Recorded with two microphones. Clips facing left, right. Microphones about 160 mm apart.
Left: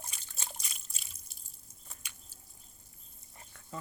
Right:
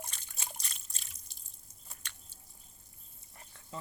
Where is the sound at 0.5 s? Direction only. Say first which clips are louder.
Even; 10° left (ahead or behind).